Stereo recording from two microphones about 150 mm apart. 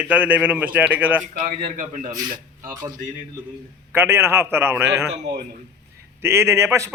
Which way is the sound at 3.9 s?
15° right (ahead or behind).